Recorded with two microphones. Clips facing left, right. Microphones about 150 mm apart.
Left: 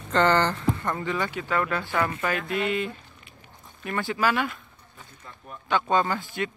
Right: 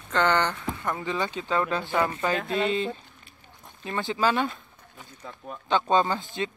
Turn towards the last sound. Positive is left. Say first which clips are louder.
# right 1 dB
turn(degrees=-20)  # may be behind; listen again after turning